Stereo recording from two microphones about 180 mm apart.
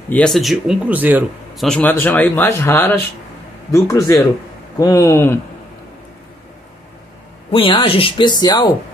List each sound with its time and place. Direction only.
0.1 s speech: 5° left (ahead or behind)
1.6 s speech: 5° left (ahead or behind)
7.5 s a woman's voice: 30° left (ahead or behind)